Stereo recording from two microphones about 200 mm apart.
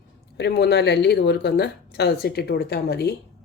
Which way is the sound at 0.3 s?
55° left (ahead or behind).